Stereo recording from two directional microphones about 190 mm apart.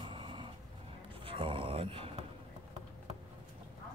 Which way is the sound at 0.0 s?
25° right (ahead or behind).